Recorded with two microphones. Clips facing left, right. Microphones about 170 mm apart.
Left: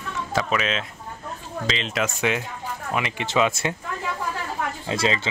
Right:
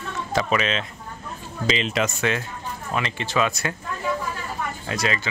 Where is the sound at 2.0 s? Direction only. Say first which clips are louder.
Even; 15° left (ahead or behind).